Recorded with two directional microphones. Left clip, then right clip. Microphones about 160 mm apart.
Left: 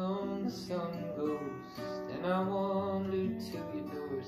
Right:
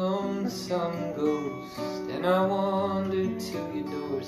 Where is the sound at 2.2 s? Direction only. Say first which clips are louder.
Right 9 dB; 5° left (ahead or behind).